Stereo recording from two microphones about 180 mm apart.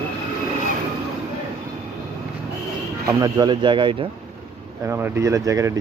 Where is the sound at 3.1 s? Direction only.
20° right (ahead or behind).